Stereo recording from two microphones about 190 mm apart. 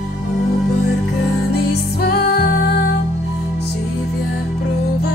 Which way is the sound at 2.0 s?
50° left (ahead or behind).